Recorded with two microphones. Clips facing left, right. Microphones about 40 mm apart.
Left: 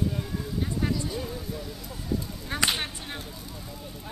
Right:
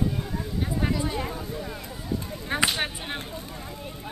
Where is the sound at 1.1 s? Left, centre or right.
Right.